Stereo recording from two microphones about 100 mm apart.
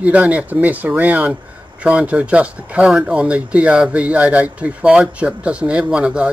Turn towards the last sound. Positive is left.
turn(degrees=-10)  # may be behind; listen again after turning